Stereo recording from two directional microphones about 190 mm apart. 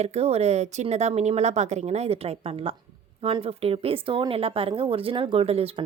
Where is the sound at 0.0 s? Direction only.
35° right (ahead or behind).